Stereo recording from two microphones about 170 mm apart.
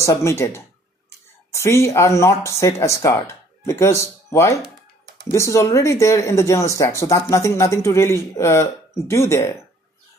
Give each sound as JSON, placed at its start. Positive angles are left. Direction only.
{"t": 0.0, "sound": "speech", "side_deg": 15}